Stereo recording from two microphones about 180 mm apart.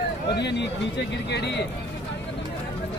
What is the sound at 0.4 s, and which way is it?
Speech, 70° left (ahead or behind).